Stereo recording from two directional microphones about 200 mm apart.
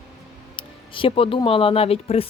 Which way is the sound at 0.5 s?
25° left (ahead or behind).